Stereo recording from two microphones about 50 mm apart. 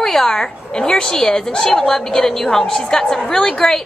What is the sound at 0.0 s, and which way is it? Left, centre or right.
A woman's voice, centre.